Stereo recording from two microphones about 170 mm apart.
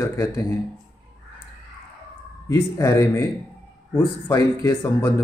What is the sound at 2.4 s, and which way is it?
Speech, 20° left (ahead or behind).